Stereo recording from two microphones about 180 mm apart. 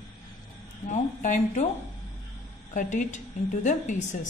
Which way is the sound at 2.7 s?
45° left (ahead or behind).